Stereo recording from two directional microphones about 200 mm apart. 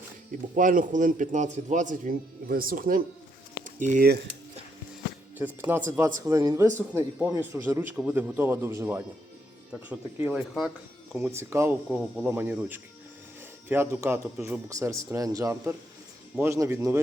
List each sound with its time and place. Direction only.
0.5 s a man's voice: 40° right (ahead or behind)
3.6 s a sound: 40° right (ahead or behind)
5.6 s a man's voice: 10° right (ahead or behind)